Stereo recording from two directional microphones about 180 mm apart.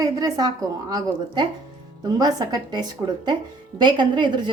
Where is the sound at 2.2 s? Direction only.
20° right (ahead or behind).